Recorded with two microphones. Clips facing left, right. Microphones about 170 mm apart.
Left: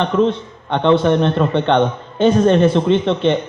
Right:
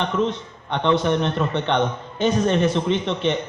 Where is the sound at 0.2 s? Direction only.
55° left (ahead or behind).